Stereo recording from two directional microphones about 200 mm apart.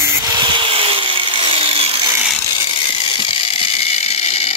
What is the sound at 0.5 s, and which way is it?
Wood, 25° right (ahead or behind).